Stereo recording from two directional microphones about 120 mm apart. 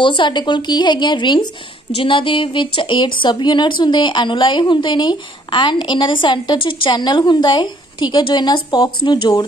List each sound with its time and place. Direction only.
0.0 s speech: 40° left (ahead or behind)